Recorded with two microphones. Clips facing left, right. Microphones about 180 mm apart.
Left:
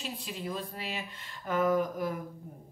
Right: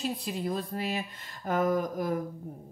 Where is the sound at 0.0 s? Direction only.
40° right (ahead or behind).